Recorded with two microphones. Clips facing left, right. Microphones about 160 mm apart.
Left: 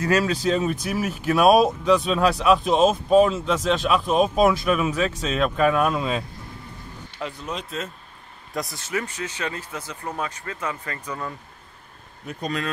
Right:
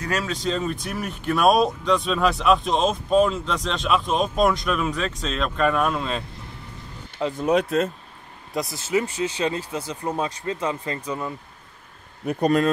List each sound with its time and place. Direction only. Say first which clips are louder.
0.0 s speech: left 5 dB; 5° left (ahead or behind)
7.3 s speech: right 15 dB; 55° right (ahead or behind)
8.7 s speech: right 5 dB; 30° right (ahead or behind)
12.3 s speech: right 9 dB; 55° right (ahead or behind)